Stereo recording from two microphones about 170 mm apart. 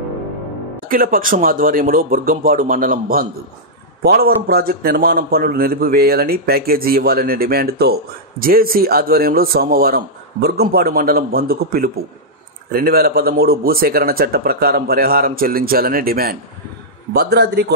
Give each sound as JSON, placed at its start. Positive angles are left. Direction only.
{"t": 0.8, "sound": "a man's voice", "side_deg": -55}
{"t": 4.0, "sound": "a man's voice", "side_deg": -70}